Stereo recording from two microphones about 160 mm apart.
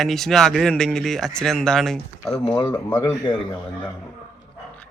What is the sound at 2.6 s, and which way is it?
Speech, 15° left (ahead or behind).